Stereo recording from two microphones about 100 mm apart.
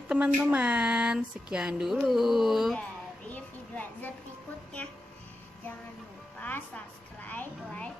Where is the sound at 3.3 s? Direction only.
15° left (ahead or behind).